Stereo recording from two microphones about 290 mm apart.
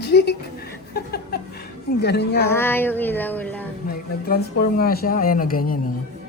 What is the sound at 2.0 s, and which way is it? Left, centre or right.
Speech, left.